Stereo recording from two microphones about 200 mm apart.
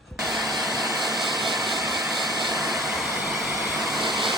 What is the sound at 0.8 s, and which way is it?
Vehicle, centre (ahead or behind).